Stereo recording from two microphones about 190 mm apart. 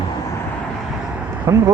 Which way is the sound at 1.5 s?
15° right (ahead or behind).